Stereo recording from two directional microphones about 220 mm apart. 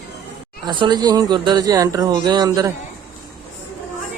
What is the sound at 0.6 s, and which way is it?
Speech, 20° right (ahead or behind).